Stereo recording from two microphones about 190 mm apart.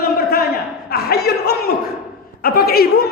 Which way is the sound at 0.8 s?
55° left (ahead or behind).